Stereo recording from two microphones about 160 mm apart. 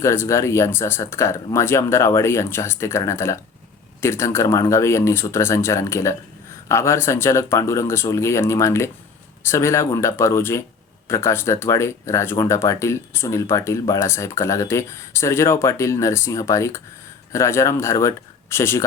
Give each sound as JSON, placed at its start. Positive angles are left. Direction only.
{"t": 0.0, "sound": "speech", "side_deg": 15}